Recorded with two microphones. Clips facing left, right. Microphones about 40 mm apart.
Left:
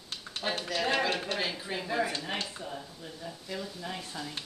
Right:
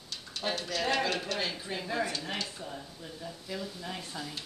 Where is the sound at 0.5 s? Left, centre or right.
Left.